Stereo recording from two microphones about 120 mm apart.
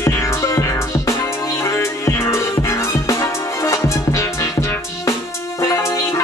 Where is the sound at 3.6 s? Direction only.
25° left (ahead or behind).